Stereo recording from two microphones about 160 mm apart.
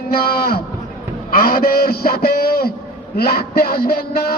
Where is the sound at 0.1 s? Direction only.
75° left (ahead or behind).